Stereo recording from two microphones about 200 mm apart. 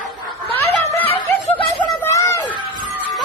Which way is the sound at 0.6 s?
10° left (ahead or behind).